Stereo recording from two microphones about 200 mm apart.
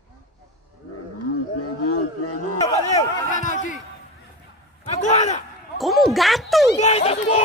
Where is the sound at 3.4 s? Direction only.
35° left (ahead or behind).